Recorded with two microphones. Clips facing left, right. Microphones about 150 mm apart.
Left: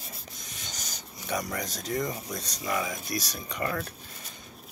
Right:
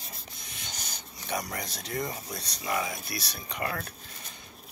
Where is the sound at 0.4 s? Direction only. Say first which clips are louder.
Even; 40° left (ahead or behind).